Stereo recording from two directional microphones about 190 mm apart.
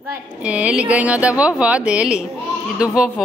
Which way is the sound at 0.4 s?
5° right (ahead or behind).